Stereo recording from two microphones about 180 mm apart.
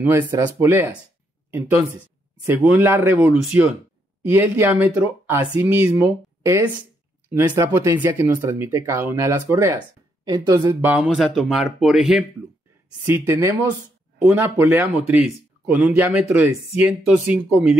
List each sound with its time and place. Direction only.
0.0 s speech: 15° right (ahead or behind)
2.4 s speech: 10° right (ahead or behind)
13.0 s speech: 15° right (ahead or behind)